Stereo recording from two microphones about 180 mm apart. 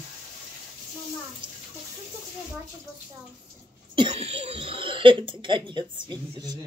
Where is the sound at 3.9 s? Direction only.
35° right (ahead or behind).